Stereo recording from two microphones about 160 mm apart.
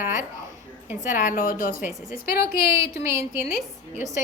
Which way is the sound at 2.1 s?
70° left (ahead or behind).